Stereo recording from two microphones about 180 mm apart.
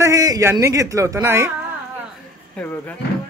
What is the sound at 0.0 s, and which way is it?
Speech, 20° right (ahead or behind).